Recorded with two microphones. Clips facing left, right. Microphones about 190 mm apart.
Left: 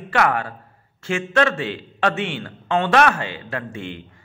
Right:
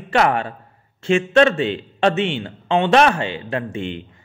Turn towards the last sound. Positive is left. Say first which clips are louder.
# right 5 dB
turn(degrees=-20)  # may be behind; listen again after turning